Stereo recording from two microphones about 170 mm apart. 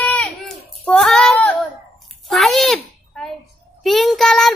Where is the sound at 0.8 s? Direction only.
5° left (ahead or behind).